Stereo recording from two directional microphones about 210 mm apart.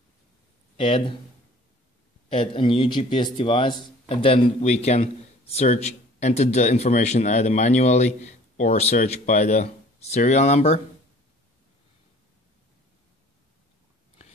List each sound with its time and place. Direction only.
0.7 s speech: 25° left (ahead or behind)
2.2 s a man's voice: 25° left (ahead or behind)